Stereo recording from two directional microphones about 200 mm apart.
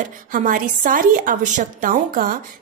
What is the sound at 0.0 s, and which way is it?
A woman's voice, 40° right (ahead or behind).